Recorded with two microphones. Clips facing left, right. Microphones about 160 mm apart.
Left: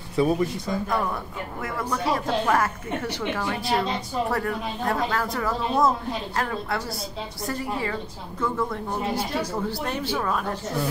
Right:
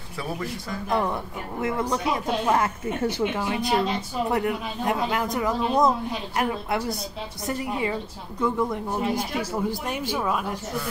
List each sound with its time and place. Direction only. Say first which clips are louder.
0.1 s speech: left 9 dB; 20° left (ahead or behind)
1.6 s speech: right 3 dB; 20° right (ahead or behind)